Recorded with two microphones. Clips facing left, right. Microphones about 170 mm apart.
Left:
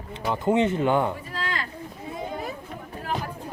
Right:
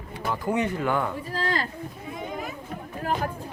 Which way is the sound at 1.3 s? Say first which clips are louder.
Right 4 dB; 35° right (ahead or behind).